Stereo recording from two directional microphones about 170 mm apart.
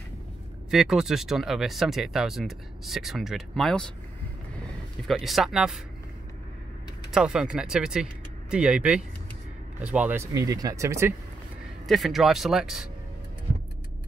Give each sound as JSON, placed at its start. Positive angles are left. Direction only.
{"t": 0.7, "sound": "speech", "side_deg": 0}
{"t": 5.0, "sound": "speech", "side_deg": 0}
{"t": 7.1, "sound": "speech", "side_deg": -5}
{"t": 11.8, "sound": "speech", "side_deg": 0}